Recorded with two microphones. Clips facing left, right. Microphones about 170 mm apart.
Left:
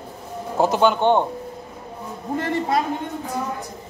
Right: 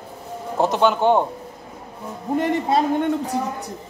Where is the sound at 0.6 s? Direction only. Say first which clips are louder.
Even; centre (ahead or behind).